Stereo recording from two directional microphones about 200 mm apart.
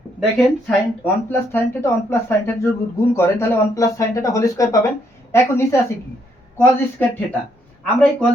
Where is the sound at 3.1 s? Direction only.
10° left (ahead or behind).